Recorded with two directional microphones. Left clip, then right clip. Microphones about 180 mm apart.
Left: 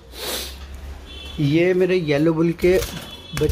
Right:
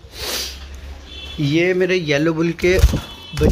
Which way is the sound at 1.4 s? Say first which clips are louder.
Right 1 dB; centre (ahead or behind).